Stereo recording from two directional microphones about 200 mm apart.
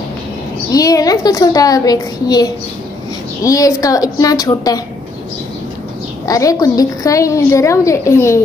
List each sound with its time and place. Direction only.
0.7 s a woman's voice: 15° left (ahead or behind)
6.2 s a woman's voice: 15° left (ahead or behind)